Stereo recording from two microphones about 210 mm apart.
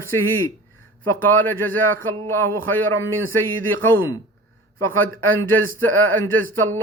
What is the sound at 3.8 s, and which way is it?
Speech, 10° left (ahead or behind).